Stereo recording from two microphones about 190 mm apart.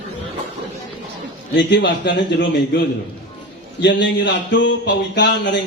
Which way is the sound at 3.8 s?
65° left (ahead or behind).